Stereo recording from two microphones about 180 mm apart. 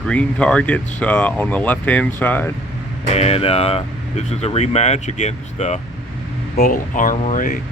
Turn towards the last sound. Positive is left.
turn(degrees=45)  # may be behind; listen again after turning